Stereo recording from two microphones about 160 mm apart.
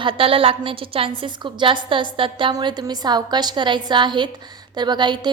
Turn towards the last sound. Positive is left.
turn(degrees=-30)  # may be behind; listen again after turning